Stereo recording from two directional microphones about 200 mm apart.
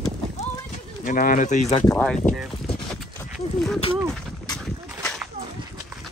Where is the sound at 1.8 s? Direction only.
5° left (ahead or behind).